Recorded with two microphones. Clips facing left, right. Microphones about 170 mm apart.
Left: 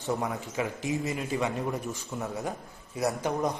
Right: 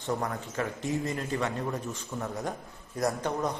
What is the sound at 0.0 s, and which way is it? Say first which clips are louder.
A man's voice: left 1 dB; 10° left (ahead or behind).